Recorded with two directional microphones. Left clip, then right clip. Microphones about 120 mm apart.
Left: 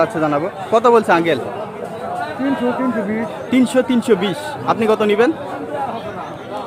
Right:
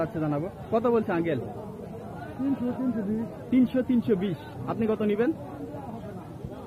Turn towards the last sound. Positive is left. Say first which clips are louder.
# left 12 dB
turn(degrees=30)  # may be behind; listen again after turning